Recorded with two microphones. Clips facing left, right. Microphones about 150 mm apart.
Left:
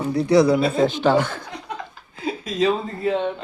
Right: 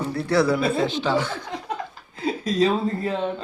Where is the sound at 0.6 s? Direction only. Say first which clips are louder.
Left 4 dB; 45° left (ahead or behind).